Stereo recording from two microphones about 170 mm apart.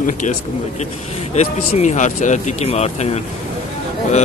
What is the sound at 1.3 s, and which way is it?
Speech, 40° left (ahead or behind).